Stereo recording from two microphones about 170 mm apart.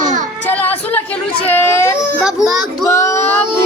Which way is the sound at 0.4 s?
10° left (ahead or behind).